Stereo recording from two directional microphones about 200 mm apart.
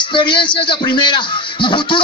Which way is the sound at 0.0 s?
25° left (ahead or behind).